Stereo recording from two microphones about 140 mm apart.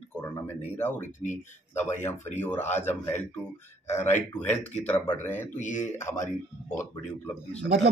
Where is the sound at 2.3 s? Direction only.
15° left (ahead or behind).